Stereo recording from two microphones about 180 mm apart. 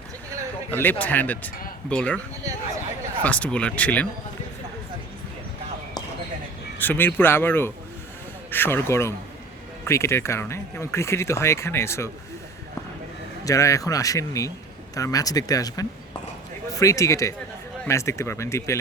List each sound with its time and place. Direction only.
0.7 s speech: 10° left (ahead or behind)
3.2 s speech: 10° left (ahead or behind)
6.7 s speech: 10° left (ahead or behind)
13.4 s speech: 15° left (ahead or behind)